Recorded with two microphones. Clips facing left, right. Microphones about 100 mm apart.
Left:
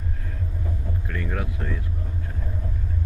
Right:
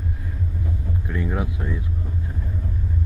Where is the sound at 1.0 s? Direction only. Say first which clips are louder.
Right 5 dB; 20° right (ahead or behind).